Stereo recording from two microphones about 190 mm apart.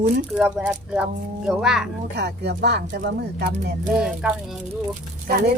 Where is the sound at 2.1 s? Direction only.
60° right (ahead or behind).